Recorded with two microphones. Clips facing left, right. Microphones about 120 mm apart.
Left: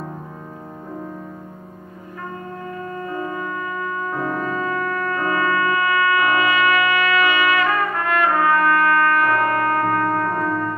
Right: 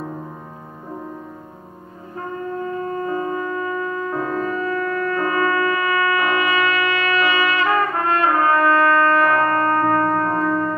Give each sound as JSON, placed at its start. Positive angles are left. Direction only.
{"t": 2.9, "sound": "music", "side_deg": -30}